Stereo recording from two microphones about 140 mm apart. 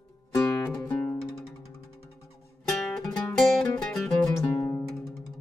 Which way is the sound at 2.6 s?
5° left (ahead or behind).